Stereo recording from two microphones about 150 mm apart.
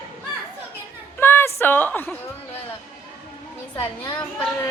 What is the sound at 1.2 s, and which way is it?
Speech, 15° left (ahead or behind).